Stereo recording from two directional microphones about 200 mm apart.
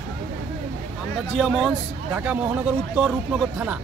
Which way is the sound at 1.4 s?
Centre (ahead or behind).